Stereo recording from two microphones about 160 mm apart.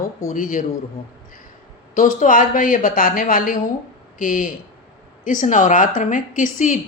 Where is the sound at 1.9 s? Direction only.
55° left (ahead or behind).